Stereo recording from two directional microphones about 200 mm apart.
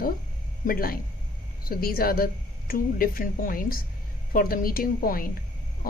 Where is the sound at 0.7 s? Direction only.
45° left (ahead or behind).